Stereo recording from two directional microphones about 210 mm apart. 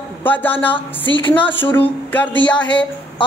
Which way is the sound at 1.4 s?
10° left (ahead or behind).